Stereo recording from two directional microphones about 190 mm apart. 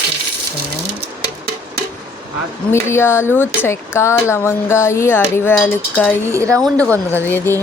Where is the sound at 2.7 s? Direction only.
15° left (ahead or behind).